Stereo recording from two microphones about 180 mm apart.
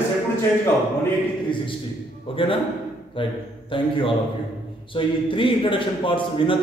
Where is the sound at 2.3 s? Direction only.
30° left (ahead or behind).